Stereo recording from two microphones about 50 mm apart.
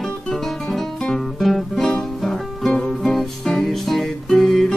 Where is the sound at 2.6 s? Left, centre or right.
Centre.